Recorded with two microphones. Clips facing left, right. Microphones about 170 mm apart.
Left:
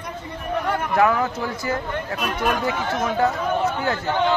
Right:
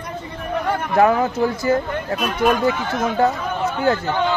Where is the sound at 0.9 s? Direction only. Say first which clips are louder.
Right 4 dB; 30° right (ahead or behind).